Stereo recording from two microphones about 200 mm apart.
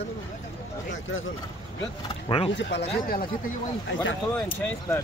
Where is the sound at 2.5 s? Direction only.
65° left (ahead or behind).